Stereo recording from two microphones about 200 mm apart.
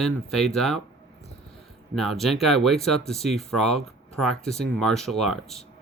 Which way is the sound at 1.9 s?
Centre (ahead or behind).